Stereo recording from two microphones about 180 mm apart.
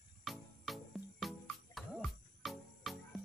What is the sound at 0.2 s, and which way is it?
Music, centre (ahead or behind).